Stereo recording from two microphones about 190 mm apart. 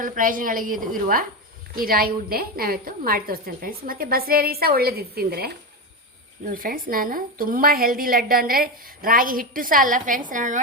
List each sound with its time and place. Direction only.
0.0 s a woman's voice: 45° right (ahead or behind)